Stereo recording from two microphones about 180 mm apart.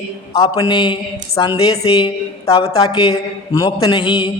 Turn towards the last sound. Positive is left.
turn(degrees=25)  # may be behind; listen again after turning